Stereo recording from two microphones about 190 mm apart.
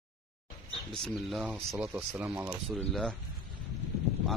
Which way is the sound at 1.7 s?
10° right (ahead or behind).